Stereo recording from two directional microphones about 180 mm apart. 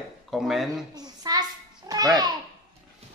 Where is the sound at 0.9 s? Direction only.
20° right (ahead or behind).